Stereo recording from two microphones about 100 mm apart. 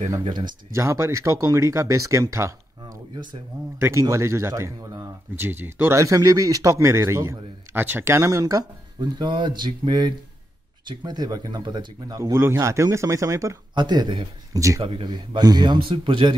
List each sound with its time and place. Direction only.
0.2 s speech: 50° right (ahead or behind)
0.7 s speech: 30° right (ahead or behind)
5.3 s speech: 20° right (ahead or behind)
9.2 s speech: 50° right (ahead or behind)
12.2 s speech: 25° right (ahead or behind)
13.7 s speech: 50° right (ahead or behind)
14.5 s speech: 35° right (ahead or behind)
14.8 s speech: 60° right (ahead or behind)